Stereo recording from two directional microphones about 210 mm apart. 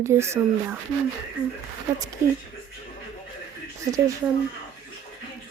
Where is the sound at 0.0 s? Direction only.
15° right (ahead or behind).